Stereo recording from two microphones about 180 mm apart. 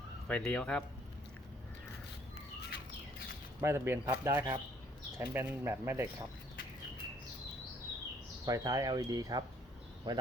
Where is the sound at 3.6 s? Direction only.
15° right (ahead or behind).